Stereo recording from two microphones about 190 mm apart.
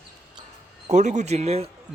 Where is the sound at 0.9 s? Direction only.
40° right (ahead or behind).